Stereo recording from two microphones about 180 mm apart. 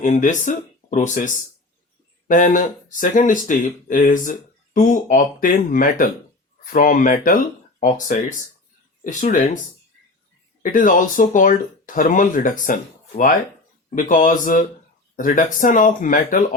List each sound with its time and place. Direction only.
0.0 s speech: 45° left (ahead or behind)
10.6 s speech: 50° left (ahead or behind)